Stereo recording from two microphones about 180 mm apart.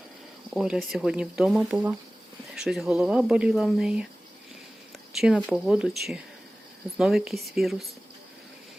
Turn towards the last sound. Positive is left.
turn(degrees=0)  # may be behind; listen again after turning